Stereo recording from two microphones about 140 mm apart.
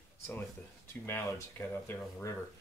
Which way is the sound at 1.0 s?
15° left (ahead or behind).